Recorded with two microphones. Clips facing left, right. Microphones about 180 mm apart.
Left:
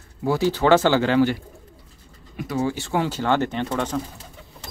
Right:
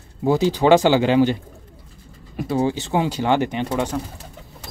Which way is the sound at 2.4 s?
30° right (ahead or behind).